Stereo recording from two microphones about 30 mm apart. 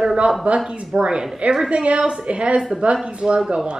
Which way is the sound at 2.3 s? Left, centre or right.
Right.